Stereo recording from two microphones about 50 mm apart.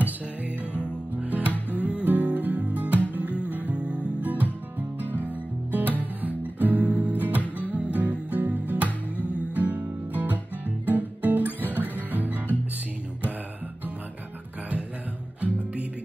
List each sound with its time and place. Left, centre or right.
1.1 s music: right
1.5 s music: left
2.0 s music: right
4.3 s music: right
6.9 s music: right
7.2 s music: right
7.4 s music: left
7.9 s music: right
9.1 s music: left
9.4 s music: right
15.4 s music: right